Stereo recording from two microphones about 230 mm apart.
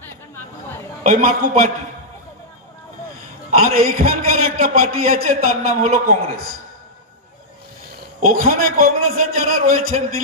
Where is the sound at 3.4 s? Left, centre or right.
Right.